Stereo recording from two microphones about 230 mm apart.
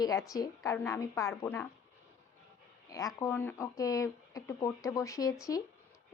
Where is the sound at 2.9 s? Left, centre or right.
Centre.